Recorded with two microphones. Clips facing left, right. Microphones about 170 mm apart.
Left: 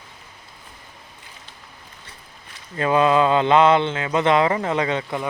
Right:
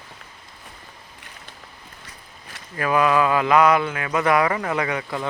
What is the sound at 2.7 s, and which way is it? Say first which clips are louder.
Mantra: left 2 dB; 25° left (ahead or behind).